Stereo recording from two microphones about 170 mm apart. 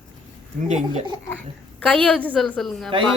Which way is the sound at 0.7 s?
45° right (ahead or behind).